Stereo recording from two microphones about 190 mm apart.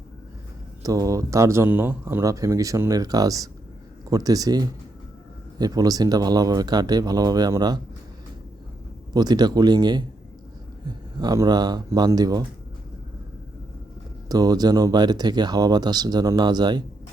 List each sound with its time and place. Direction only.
0.8 s speech: 20° right (ahead or behind)
9.1 s speech: 20° right (ahead or behind)
14.3 s speech: 20° right (ahead or behind)